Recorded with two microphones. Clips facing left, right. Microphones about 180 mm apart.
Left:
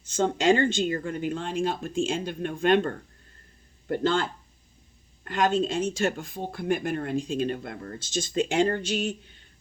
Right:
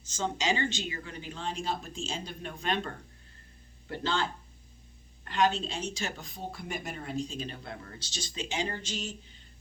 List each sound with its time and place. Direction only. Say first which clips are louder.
0.0 s speech: left 9 dB; 55° left (ahead or behind)